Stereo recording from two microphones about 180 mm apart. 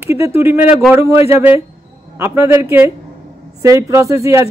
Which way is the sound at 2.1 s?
15° right (ahead or behind).